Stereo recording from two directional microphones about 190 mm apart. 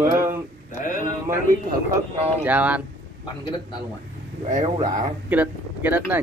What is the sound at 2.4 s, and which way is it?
Speech, 5° right (ahead or behind).